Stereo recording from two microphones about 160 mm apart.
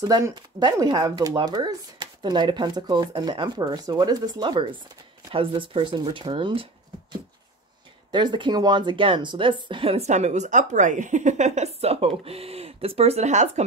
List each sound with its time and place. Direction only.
0.0 s speech: 20° right (ahead or behind); by 13.7 s 45° right (ahead or behind)